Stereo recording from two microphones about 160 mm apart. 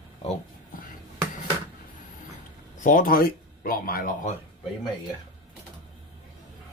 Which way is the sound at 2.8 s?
60° left (ahead or behind).